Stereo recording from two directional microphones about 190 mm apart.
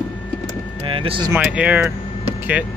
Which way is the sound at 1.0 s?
25° right (ahead or behind).